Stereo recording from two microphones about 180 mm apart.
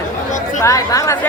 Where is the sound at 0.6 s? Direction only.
20° left (ahead or behind).